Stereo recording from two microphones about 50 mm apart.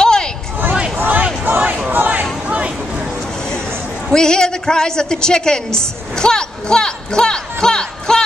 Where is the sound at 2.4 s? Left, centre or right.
Right.